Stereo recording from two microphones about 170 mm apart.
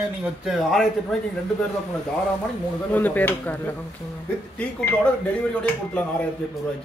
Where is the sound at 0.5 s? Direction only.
Centre (ahead or behind).